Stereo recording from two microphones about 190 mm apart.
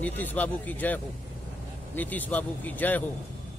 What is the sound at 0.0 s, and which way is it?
Speech, 10° left (ahead or behind).